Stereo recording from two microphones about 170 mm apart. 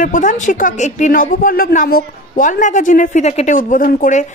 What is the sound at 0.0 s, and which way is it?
A woman's voice, 50° left (ahead or behind).